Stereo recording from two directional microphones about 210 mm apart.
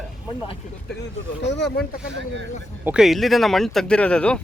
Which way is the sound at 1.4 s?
55° left (ahead or behind).